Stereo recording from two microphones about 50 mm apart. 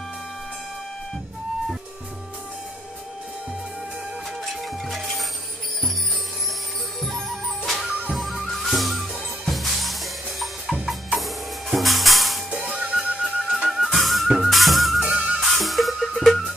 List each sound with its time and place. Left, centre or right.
4.8 s music: centre
7.0 s music: centre
10.4 s drum: centre
11.1 s music: centre
12.6 s music: centre
13.2 s music: centre
15.0 s music: centre
15.5 s music: centre